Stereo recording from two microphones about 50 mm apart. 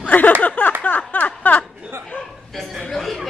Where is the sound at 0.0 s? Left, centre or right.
Left.